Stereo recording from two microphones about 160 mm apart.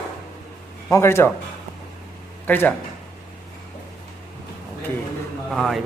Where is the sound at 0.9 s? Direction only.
15° left (ahead or behind).